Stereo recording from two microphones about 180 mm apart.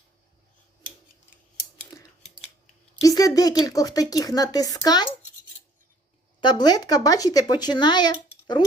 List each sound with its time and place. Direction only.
1.9 s scissors: 20° left (ahead or behind)
3.0 s speech: 20° left (ahead or behind)
6.4 s speech: 25° left (ahead or behind)